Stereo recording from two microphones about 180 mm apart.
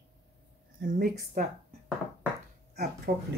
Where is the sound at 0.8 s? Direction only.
45° right (ahead or behind).